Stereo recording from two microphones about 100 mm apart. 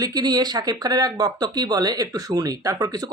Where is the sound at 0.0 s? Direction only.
40° right (ahead or behind).